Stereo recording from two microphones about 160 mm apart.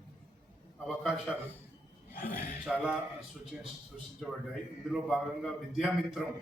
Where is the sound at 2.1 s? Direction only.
65° left (ahead or behind).